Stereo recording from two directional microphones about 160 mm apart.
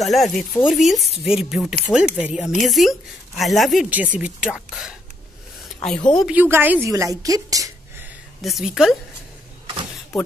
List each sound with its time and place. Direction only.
0.0 s speech: centre (ahead or behind)
6.1 s a woman's voice: 10° right (ahead or behind)
8.4 s speech: centre (ahead or behind)